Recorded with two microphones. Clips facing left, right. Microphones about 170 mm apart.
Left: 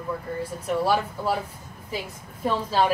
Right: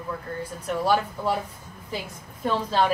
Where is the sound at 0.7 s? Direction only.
5° left (ahead or behind).